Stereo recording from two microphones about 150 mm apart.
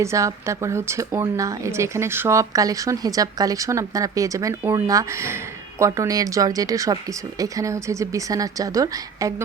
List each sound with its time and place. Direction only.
0.0 s speech: 20° right (ahead or behind)